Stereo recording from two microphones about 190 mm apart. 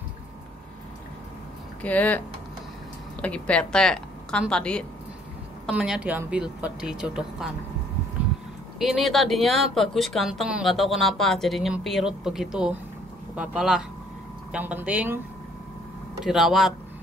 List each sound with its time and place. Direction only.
1.8 s a woman's voice: 10° left (ahead or behind)
5.7 s speech: 5° right (ahead or behind)
8.7 s speech: centre (ahead or behind)
16.3 s speech: centre (ahead or behind)